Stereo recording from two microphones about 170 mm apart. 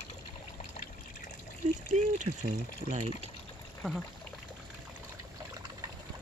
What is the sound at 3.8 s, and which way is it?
Speech, 5° right (ahead or behind).